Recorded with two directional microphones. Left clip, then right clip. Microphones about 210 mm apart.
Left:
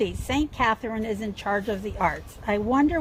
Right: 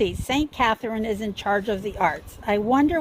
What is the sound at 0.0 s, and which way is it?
Speech, 50° right (ahead or behind).